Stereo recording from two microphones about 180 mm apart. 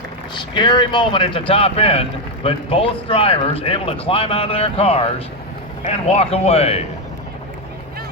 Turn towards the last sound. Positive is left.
turn(degrees=35)  # may be behind; listen again after turning